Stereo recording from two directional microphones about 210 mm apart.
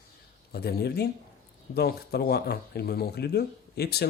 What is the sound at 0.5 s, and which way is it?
Speech, 50° left (ahead or behind).